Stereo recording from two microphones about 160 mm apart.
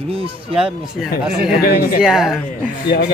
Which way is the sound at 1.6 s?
70° left (ahead or behind).